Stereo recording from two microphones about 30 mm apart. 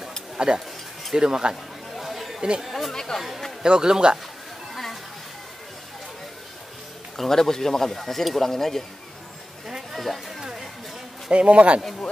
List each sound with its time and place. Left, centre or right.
0.4 s speech: right
1.1 s speech: right
2.0 s chatter: centre
2.6 s speech: centre
2.9 s speech: centre
3.2 s speech: centre
3.6 s speech: right
7.2 s speech: centre
9.9 s speech: centre
11.2 s speech: right